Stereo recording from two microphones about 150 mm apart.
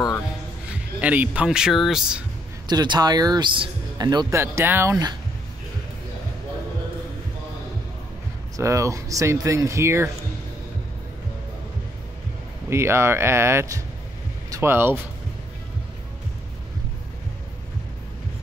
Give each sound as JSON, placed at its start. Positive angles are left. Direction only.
{"t": 0.9, "sound": "speech", "side_deg": -10}
{"t": 2.7, "sound": "speech", "side_deg": -30}
{"t": 8.5, "sound": "speech", "side_deg": -20}
{"t": 12.6, "sound": "speech", "side_deg": -15}